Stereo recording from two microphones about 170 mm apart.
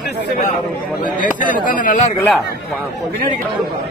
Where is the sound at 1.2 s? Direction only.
50° left (ahead or behind).